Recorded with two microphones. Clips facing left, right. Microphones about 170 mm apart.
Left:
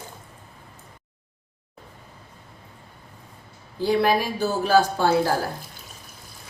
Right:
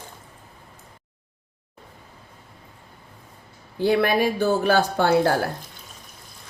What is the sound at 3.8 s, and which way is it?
Speech, 60° right (ahead or behind).